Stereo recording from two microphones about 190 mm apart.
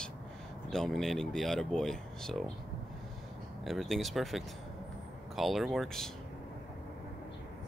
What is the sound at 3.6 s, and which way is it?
Speech, centre (ahead or behind).